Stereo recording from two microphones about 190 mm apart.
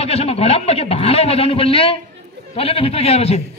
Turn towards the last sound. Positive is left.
turn(degrees=35)  # may be behind; listen again after turning